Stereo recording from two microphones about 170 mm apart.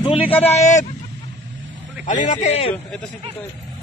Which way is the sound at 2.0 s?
50° left (ahead or behind).